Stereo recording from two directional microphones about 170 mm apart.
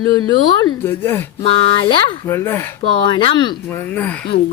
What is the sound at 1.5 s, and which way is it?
Speech, 30° left (ahead or behind).